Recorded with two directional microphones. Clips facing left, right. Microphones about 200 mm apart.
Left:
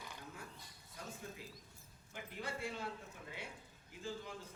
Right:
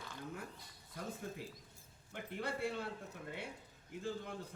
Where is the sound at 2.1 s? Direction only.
60° right (ahead or behind).